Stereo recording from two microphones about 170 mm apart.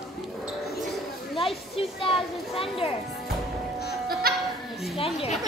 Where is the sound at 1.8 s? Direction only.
30° left (ahead or behind).